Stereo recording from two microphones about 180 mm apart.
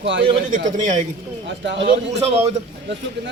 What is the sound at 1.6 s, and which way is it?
Speech, 85° right.